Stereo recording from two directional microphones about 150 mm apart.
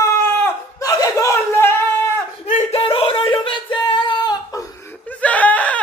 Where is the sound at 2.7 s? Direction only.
35° left (ahead or behind).